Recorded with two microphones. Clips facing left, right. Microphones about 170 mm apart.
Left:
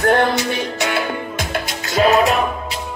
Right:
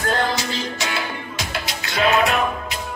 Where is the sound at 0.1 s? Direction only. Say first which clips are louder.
Left 6 dB; 60° left (ahead or behind).